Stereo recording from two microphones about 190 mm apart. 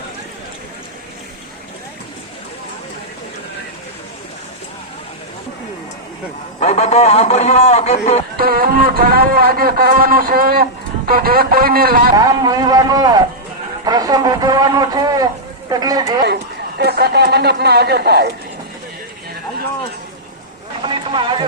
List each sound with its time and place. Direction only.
6.6 s a man's voice: 35° left (ahead or behind)
8.4 s a man's voice: 50° right (ahead or behind)
12.1 s a man's voice: 20° right (ahead or behind)
16.2 s speech: 60° right (ahead or behind)
20.8 s a sound: 25° right (ahead or behind)